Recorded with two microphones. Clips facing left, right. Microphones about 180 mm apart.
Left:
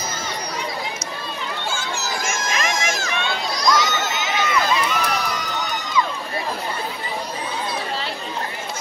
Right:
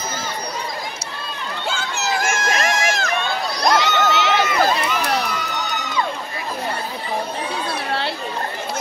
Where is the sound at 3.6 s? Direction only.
60° right (ahead or behind).